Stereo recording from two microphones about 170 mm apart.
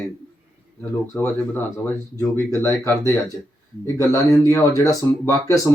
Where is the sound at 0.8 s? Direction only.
15° left (ahead or behind).